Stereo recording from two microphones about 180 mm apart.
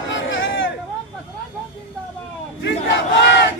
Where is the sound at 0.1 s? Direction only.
90° left.